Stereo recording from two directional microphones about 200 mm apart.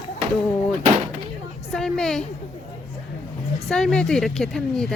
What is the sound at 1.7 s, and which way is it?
Speech, centre (ahead or behind).